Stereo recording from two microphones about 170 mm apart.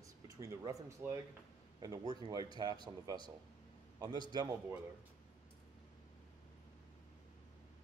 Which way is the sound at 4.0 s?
25° right (ahead or behind).